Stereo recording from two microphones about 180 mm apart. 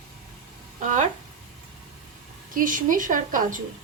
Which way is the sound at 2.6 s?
50° right (ahead or behind).